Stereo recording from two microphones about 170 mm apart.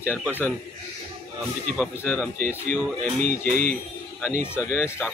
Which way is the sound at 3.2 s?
45° right (ahead or behind).